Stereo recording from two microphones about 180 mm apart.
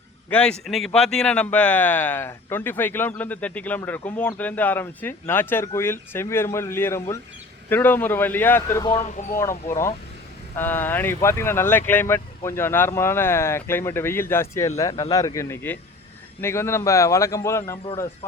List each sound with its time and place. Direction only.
0.3 s a man's voice: 5° left (ahead or behind)